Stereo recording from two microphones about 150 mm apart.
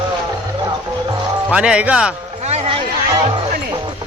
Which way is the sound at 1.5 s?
5° right (ahead or behind).